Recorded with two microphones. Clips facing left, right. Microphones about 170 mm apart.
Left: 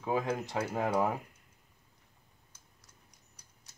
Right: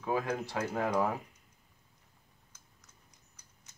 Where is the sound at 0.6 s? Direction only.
10° left (ahead or behind).